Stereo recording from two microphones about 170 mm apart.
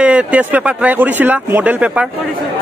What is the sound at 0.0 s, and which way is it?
Speech, 5° right (ahead or behind).